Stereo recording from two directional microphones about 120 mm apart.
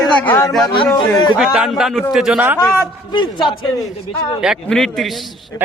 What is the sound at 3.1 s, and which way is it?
Speech, 40° left (ahead or behind).